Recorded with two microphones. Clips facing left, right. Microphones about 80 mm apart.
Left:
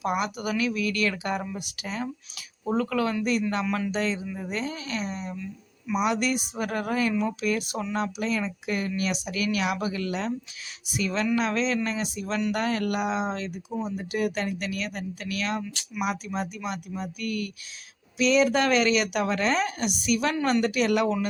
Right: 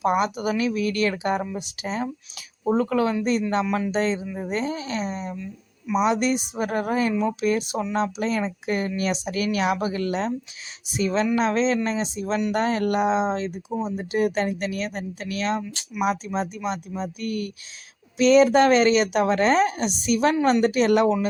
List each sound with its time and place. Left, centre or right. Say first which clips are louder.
0.0 s speech: right 5 dB; right